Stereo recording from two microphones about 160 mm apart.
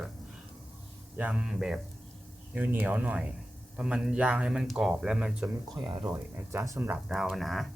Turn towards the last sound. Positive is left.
turn(degrees=0)  # may be behind; listen again after turning